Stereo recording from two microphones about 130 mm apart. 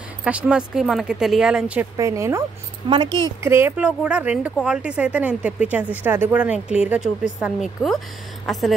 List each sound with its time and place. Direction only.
0.2 s speech: 10° right (ahead or behind)
2.0 s speech: 20° right (ahead or behind)
3.1 s speech: 25° left (ahead or behind)
3.4 s a woman's voice: 20° right (ahead or behind); by 8.7 s centre (ahead or behind)